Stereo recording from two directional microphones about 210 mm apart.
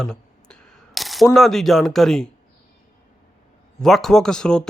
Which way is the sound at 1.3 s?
Centre (ahead or behind).